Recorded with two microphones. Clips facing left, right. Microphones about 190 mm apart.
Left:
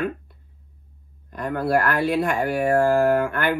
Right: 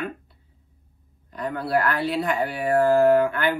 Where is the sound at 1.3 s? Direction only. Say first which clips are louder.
Left 3 dB; 50° left (ahead or behind).